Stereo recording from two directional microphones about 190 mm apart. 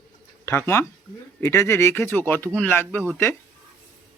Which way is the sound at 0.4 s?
15° left (ahead or behind).